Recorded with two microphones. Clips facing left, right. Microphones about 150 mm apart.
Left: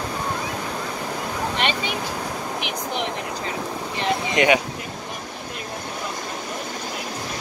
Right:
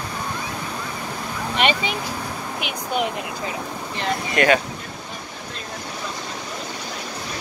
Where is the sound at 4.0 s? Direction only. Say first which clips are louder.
Even; 20° left (ahead or behind).